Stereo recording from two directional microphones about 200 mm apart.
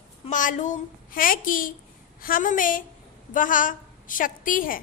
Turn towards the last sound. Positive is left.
turn(degrees=45)  # may be behind; listen again after turning